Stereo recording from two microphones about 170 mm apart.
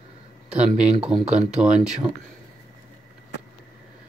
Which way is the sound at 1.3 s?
40° right (ahead or behind).